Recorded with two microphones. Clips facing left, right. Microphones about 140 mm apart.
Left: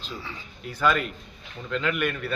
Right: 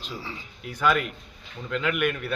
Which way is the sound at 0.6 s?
10° right (ahead or behind).